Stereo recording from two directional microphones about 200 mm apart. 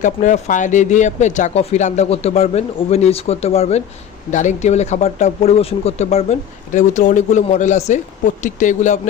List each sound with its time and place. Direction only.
0.0 s speech: 40° left (ahead or behind)